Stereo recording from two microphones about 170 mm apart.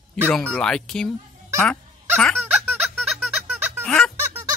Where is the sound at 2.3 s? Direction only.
10° right (ahead or behind).